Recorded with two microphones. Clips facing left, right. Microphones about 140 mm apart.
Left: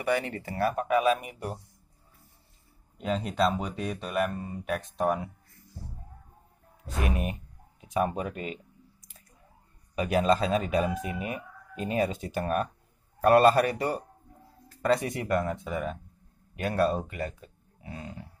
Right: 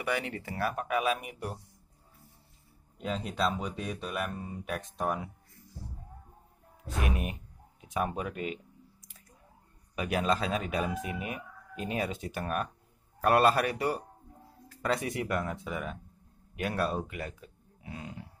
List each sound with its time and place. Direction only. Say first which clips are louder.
0.2 s speech: left 4 dB; 5° right (ahead or behind)
3.0 s speech: left 5 dB; centre (ahead or behind)
7.0 s speech: left 3 dB; 5° right (ahead or behind)
9.9 s speech: left 5 dB; centre (ahead or behind)